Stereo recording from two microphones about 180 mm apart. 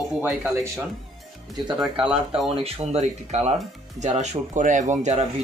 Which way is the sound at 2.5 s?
30° right (ahead or behind).